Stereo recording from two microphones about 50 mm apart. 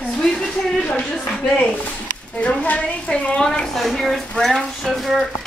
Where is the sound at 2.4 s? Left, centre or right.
Left.